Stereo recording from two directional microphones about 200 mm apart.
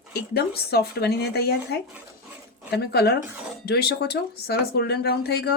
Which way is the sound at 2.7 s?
55° left (ahead or behind).